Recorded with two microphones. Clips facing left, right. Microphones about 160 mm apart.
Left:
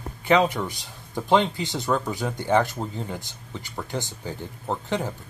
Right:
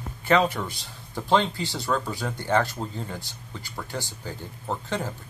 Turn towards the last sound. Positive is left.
turn(degrees=15)  # may be behind; listen again after turning